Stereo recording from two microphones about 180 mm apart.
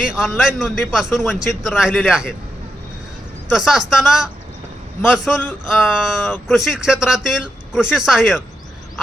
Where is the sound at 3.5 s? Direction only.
Centre (ahead or behind).